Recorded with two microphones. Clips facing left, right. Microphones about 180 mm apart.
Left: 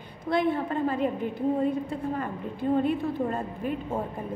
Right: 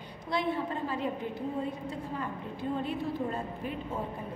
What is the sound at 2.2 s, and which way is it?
A woman's voice, 55° left (ahead or behind).